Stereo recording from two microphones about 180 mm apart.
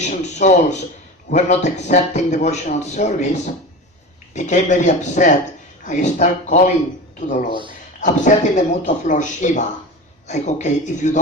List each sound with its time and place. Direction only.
0.0 s a man's voice: 40° left (ahead or behind)